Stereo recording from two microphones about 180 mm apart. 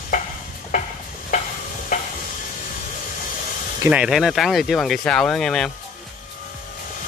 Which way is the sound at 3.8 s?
5° right (ahead or behind).